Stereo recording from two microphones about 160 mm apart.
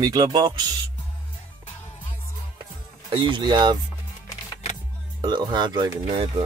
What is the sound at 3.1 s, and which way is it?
Speech, 30° right (ahead or behind).